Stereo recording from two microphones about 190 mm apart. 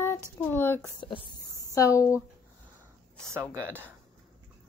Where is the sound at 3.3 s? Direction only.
15° right (ahead or behind).